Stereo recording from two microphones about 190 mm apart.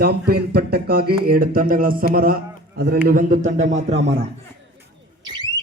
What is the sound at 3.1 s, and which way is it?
Speech, 45° right (ahead or behind).